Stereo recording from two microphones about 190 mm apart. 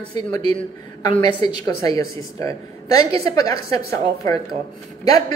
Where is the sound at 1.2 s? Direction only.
20° left (ahead or behind).